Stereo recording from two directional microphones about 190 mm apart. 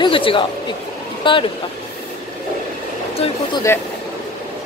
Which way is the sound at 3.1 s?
30° left (ahead or behind).